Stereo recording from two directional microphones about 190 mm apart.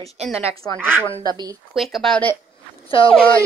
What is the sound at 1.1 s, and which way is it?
Speech, 25° left (ahead or behind).